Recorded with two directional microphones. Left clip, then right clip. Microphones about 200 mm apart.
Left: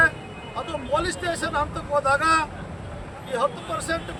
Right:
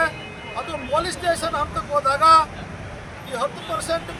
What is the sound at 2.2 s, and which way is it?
Speech, 20° left (ahead or behind).